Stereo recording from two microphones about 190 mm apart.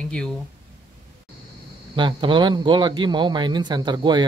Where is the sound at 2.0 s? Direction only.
25° right (ahead or behind).